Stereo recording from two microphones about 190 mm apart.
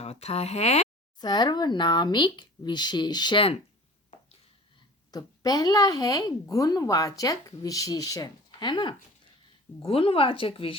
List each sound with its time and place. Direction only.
0.0 s speech: 35° left (ahead or behind)
1.2 s speech: 20° left (ahead or behind)
5.1 s speech: 20° left (ahead or behind)